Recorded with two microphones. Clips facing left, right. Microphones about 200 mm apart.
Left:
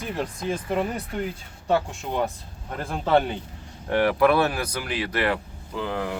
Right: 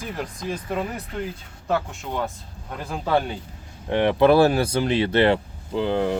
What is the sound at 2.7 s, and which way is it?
Speech, centre (ahead or behind).